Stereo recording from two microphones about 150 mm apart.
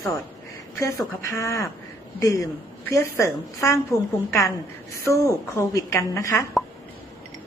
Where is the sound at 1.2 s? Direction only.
20° left (ahead or behind).